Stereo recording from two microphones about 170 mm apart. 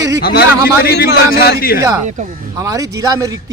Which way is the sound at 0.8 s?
70° left (ahead or behind).